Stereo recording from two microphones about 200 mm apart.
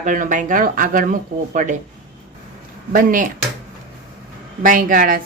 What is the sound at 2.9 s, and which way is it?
Speech, 45° right (ahead or behind).